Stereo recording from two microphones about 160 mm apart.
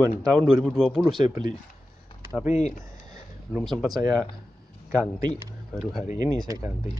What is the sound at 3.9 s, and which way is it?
Speech, 25° right (ahead or behind).